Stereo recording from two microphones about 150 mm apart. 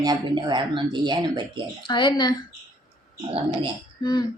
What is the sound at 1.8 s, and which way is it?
Speech, 30° left (ahead or behind).